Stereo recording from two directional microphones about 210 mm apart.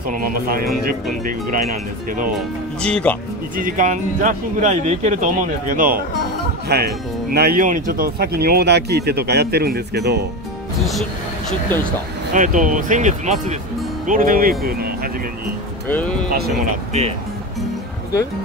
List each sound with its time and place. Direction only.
0.1 s speech: 45° right (ahead or behind)
2.8 s speech: 5° left (ahead or behind)
3.5 s speech: 40° right (ahead or behind)
11.7 s speech: 10° left (ahead or behind)
12.4 s speech: 40° right (ahead or behind)
15.9 s speech: 5° left (ahead or behind)